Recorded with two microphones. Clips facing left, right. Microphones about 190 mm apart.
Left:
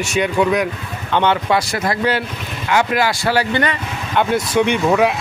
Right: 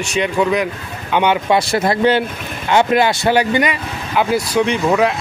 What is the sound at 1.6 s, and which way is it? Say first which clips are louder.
Speech: right 4 dB; 25° right (ahead or behind).